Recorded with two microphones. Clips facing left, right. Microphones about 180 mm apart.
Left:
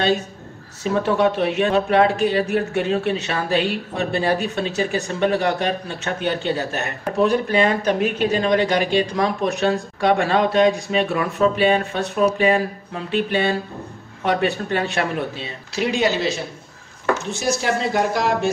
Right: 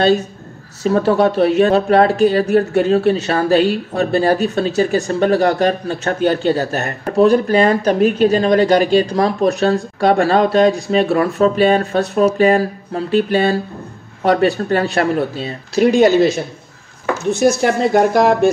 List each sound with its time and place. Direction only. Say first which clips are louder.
0.8 s speech: right 5 dB; 35° right (ahead or behind); by 18.5 s 50° right (ahead or behind)